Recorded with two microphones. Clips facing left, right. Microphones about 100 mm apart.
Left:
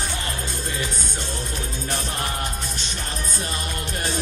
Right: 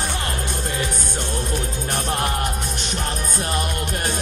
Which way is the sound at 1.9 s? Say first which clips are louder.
Right 5 dB; 55° right (ahead or behind).